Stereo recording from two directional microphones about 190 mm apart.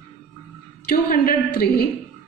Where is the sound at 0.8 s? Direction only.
50° left (ahead or behind).